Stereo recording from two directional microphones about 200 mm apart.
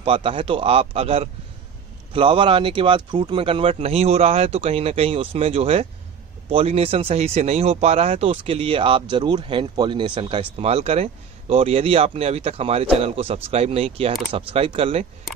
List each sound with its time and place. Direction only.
0.0 s speech: 30° right (ahead or behind)